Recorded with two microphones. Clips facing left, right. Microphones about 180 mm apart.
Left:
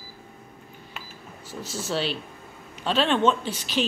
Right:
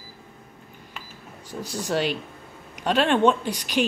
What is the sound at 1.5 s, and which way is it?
Speech, 15° right (ahead or behind).